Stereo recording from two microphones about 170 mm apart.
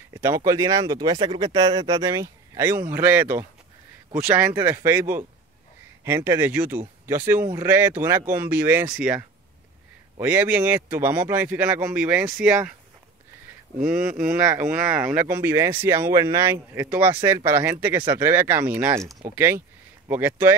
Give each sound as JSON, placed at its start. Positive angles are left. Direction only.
{"t": 0.1, "sound": "speech", "side_deg": -15}
{"t": 13.7, "sound": "speech", "side_deg": -5}